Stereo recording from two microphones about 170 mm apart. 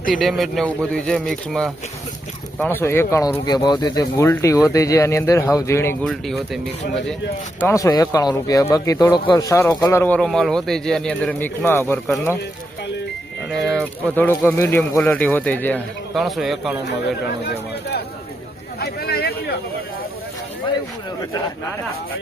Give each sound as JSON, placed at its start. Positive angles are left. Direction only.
{"t": 0.2, "sound": "speech", "side_deg": 0}
{"t": 2.6, "sound": "speech", "side_deg": 15}
{"t": 6.1, "sound": "speech", "side_deg": 0}
{"t": 7.6, "sound": "speech", "side_deg": 20}
{"t": 13.5, "sound": "speech", "side_deg": 0}
{"t": 16.1, "sound": "speech", "side_deg": 0}
{"t": 18.8, "sound": "a sound", "side_deg": 70}